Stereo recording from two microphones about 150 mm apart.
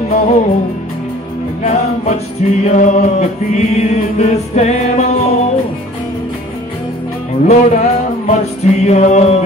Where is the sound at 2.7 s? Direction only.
50° left (ahead or behind).